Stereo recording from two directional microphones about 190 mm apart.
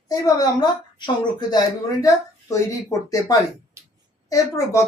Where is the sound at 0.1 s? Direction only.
20° left (ahead or behind).